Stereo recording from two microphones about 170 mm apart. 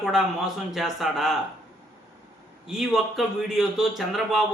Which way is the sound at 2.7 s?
Centre (ahead or behind).